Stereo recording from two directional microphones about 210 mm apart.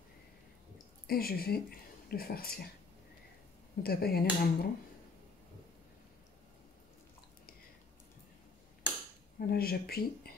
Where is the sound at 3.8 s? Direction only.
50° left (ahead or behind).